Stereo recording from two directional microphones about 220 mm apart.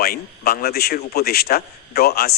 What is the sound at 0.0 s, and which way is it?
A man's voice, 45° left (ahead or behind).